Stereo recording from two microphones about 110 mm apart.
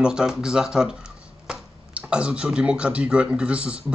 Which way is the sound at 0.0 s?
5° right (ahead or behind).